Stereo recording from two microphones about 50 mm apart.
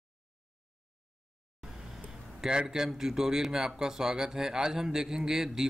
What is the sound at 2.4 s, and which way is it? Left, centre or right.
Speech, centre.